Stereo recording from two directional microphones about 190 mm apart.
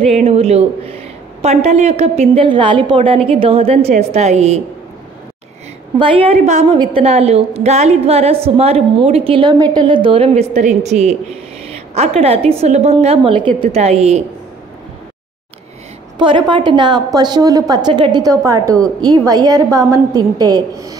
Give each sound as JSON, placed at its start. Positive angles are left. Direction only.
{"t": 0.1, "sound": "a woman's voice", "side_deg": -30}
{"t": 5.9, "sound": "a woman's voice", "side_deg": -30}
{"t": 16.2, "sound": "a woman's voice", "side_deg": -25}